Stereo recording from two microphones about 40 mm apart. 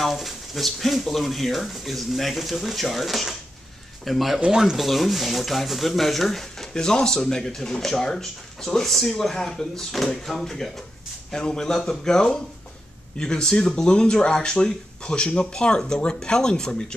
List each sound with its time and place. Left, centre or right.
0.0 s speech: centre
6.7 s speech: centre
11.3 s speech: centre